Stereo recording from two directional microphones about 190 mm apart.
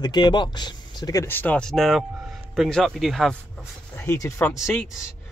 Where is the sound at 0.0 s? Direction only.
20° left (ahead or behind); by 3.3 s centre (ahead or behind).